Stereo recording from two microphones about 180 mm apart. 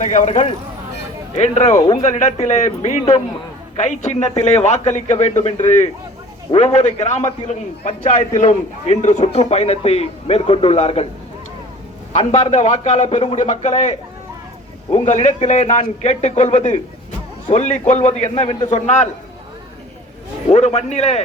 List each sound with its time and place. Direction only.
0.0 s a man's voice: 40° left (ahead or behind)
12.1 s speech: 40° left (ahead or behind)
14.9 s speech: 40° left (ahead or behind)
20.5 s speech: 40° left (ahead or behind)